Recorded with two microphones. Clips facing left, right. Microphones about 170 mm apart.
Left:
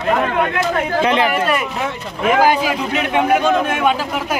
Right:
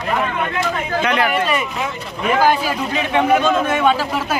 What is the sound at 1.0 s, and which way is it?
Speech, 25° left (ahead or behind).